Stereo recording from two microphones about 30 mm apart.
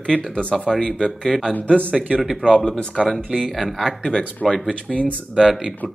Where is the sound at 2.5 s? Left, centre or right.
Centre.